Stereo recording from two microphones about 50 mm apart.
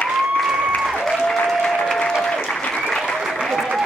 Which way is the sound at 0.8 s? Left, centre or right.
Centre.